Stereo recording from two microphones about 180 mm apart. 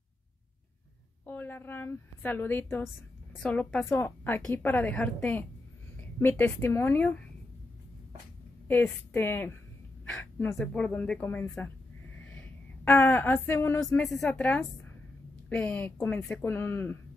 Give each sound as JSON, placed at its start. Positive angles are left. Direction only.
{"t": 1.2, "sound": "a woman's voice", "side_deg": 10}
{"t": 8.6, "sound": "a woman's voice", "side_deg": 10}
{"t": 10.0, "sound": "a sound", "side_deg": 5}
{"t": 10.6, "sound": "a woman's voice", "side_deg": 5}
{"t": 12.2, "sound": "a sound", "side_deg": 10}
{"t": 15.5, "sound": "a woman's voice", "side_deg": 10}